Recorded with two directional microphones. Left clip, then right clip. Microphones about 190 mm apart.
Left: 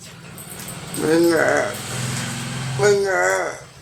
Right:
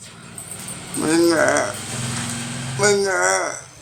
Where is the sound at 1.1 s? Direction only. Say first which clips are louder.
Even; 55° right (ahead or behind).